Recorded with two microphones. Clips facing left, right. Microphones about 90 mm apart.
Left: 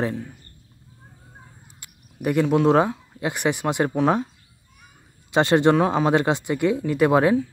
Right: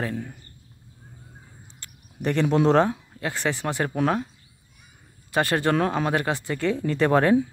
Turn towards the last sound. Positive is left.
turn(degrees=10)  # may be behind; listen again after turning